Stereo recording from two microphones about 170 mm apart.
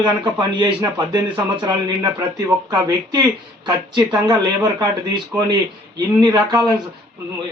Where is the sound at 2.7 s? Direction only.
20° right (ahead or behind).